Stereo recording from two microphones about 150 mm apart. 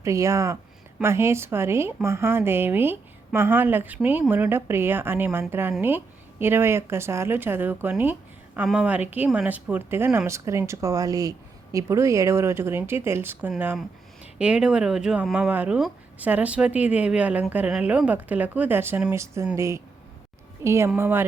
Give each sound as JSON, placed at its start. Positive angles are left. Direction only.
{"t": 0.0, "sound": "speech", "side_deg": -20}